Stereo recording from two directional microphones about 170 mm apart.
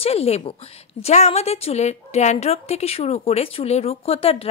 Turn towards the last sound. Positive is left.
turn(degrees=35)  # may be behind; listen again after turning